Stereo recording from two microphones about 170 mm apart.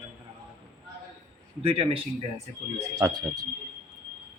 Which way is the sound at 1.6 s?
35° right (ahead or behind).